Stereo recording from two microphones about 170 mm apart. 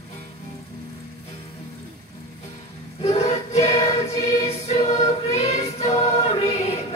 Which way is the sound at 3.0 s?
40° left (ahead or behind).